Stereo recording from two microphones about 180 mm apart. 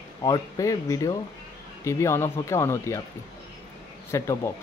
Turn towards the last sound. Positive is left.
turn(degrees=15)  # may be behind; listen again after turning